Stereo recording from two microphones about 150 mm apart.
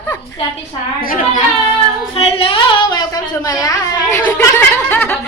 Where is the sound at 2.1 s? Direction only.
40° left (ahead or behind); by 3.7 s 25° left (ahead or behind).